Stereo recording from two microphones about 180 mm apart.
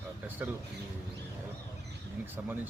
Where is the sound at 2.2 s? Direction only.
10° right (ahead or behind).